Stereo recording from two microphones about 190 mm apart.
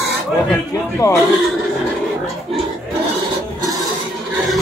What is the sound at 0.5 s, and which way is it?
Speech, 15° left (ahead or behind).